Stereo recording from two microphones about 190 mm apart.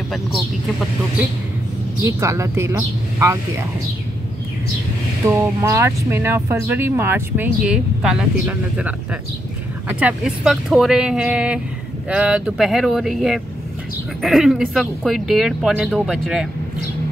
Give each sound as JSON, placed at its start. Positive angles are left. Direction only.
{"t": 0.1, "sound": "speech", "side_deg": 0}
{"t": 2.0, "sound": "speech", "side_deg": -15}
{"t": 5.3, "sound": "speech", "side_deg": -15}